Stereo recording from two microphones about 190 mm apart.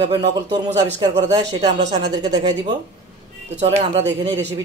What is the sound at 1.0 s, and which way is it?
A man's voice, 25° right (ahead or behind).